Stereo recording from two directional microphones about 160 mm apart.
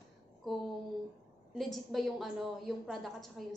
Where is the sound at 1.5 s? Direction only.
Centre (ahead or behind).